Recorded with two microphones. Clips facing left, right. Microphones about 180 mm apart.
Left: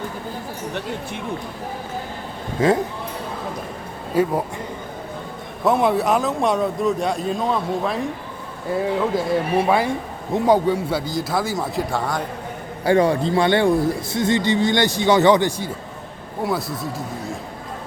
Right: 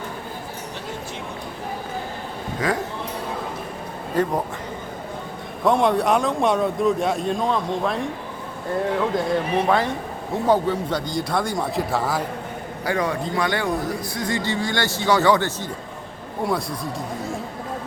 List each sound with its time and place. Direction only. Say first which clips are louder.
2.6 s speech: left 7 dB; 25° left (ahead or behind)
4.1 s speech: left 3 dB; 10° left (ahead or behind)
5.6 s a man's voice: left 1 dB; 5° left (ahead or behind)
12.8 s speech: left 7 dB; 30° left (ahead or behind); by 15.7 s 15° left (ahead or behind)
16.4 s a man's voice: left 1 dB; centre (ahead or behind)